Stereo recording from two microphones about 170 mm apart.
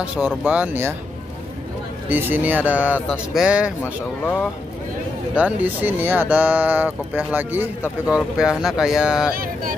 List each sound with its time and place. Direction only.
0.4 s speech: 10° right (ahead or behind)
2.0 s speech: 10° right (ahead or behind)
5.3 s speech: 10° right (ahead or behind)
9.3 s speech: 55° right (ahead or behind)